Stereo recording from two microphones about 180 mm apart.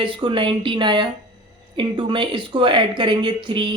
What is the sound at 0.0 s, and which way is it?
Speech, 25° right (ahead or behind).